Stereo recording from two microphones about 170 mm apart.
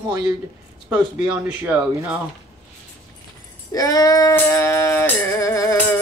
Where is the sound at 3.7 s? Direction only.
20° left (ahead or behind).